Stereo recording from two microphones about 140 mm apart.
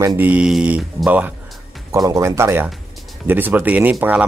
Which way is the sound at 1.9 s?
25° right (ahead or behind).